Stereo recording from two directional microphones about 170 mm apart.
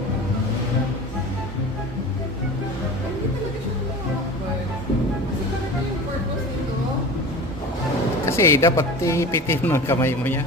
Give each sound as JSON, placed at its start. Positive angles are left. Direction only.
{"t": 8.3, "sound": "speech", "side_deg": 15}